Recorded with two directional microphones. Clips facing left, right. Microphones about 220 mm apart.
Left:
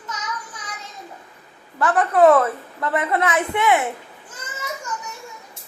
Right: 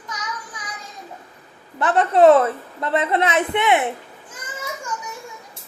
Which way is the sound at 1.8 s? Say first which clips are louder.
Right 1 dB; 25° right (ahead or behind).